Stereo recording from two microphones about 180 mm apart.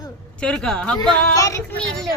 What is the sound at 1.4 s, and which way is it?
Speech, 15° left (ahead or behind).